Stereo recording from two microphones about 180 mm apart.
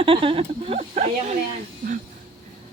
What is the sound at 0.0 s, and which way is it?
Speech, 30° right (ahead or behind).